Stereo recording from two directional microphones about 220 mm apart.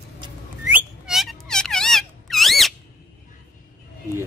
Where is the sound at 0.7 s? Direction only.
Centre (ahead or behind).